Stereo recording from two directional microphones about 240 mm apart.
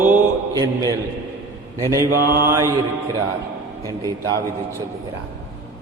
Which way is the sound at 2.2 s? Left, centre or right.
Right.